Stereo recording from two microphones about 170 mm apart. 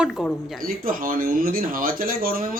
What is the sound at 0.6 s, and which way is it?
Speech, 55° right (ahead or behind).